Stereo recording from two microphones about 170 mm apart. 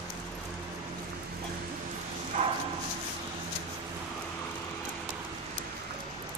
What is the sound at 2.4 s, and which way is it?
Bow-wow, 40° right (ahead or behind).